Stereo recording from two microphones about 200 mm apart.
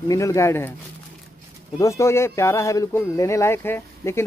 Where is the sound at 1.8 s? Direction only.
15° left (ahead or behind).